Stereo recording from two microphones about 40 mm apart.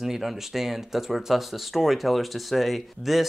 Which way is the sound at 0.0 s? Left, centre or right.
Centre.